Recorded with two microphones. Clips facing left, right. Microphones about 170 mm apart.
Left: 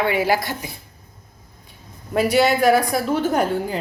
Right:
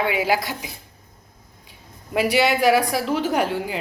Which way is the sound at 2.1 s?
40° left (ahead or behind).